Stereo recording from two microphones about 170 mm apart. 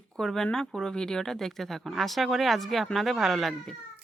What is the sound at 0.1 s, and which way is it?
Speech, 5° left (ahead or behind).